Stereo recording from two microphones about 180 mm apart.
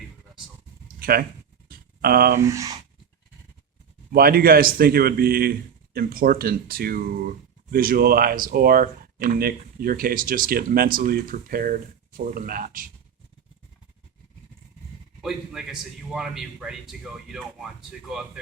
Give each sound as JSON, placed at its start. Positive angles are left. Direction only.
{"t": 0.9, "sound": "a sound", "side_deg": -55}
{"t": 2.4, "sound": "speech", "side_deg": -15}
{"t": 4.1, "sound": "speech", "side_deg": -60}
{"t": 15.2, "sound": "a man's voice", "side_deg": 0}